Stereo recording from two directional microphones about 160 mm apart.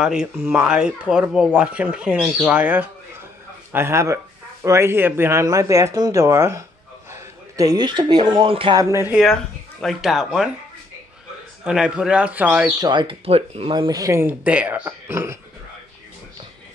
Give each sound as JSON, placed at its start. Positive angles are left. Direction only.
{"t": 0.0, "sound": "a man's voice", "side_deg": -5}
{"t": 9.1, "sound": "speech", "side_deg": 0}
{"t": 11.6, "sound": "speech", "side_deg": -5}
{"t": 12.8, "sound": "speech", "side_deg": -30}